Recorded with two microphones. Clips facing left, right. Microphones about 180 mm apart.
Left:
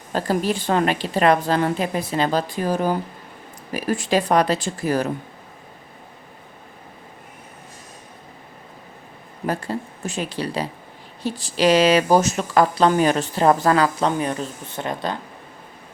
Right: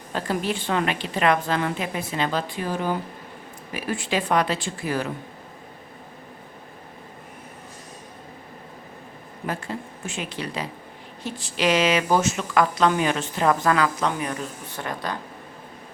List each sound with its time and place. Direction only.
0.1 s speech: 40° left (ahead or behind)
9.5 s speech: 40° left (ahead or behind); by 15.1 s 25° left (ahead or behind)